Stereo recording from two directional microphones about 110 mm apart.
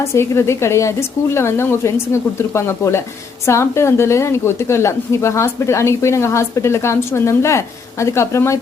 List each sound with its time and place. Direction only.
0.0 s a woman's voice: 25° left (ahead or behind)